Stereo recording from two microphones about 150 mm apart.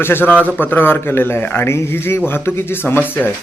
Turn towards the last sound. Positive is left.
turn(degrees=15)  # may be behind; listen again after turning